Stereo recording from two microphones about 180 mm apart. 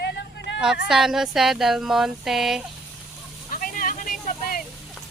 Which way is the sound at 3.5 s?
50° left (ahead or behind).